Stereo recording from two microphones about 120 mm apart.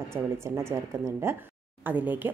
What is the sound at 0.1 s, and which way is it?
Speech, 20° right (ahead or behind).